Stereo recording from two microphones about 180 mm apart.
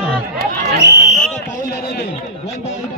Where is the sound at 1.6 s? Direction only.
60° left (ahead or behind).